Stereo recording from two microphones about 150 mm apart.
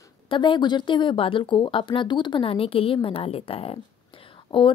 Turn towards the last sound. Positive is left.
turn(degrees=35)  # may be behind; listen again after turning